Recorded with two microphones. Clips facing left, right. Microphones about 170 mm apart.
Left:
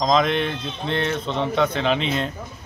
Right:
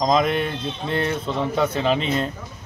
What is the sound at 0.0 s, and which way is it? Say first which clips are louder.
A man's voice: even; 5° right (ahead or behind).